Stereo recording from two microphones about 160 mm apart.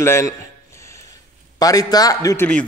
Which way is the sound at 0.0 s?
15° left (ahead or behind).